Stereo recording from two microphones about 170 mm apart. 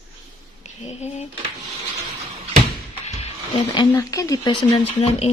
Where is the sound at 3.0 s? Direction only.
40° left (ahead or behind).